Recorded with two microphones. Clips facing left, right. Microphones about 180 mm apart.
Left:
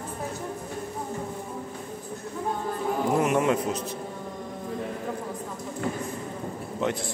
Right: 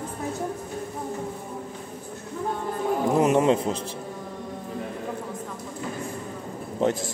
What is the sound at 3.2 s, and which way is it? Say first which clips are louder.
Music: right 5 dB; 30° right (ahead or behind).